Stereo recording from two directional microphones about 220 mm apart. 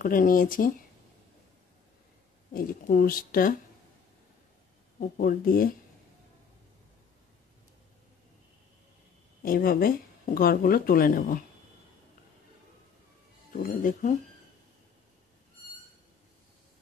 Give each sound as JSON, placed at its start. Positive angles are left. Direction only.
{"t": 0.0, "sound": "speech", "side_deg": 40}
{"t": 2.5, "sound": "speech", "side_deg": 40}
{"t": 5.0, "sound": "speech", "side_deg": 35}
{"t": 9.4, "sound": "speech", "side_deg": 40}
{"t": 13.5, "sound": "speech", "side_deg": 40}